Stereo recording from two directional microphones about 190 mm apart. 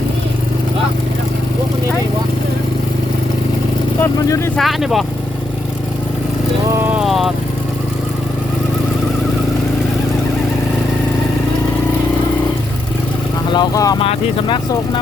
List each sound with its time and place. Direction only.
4.0 s speech: 15° left (ahead or behind)
4.5 s speech: centre (ahead or behind)
6.8 s vehicle: 5° right (ahead or behind)
13.5 s speech: 20° left (ahead or behind)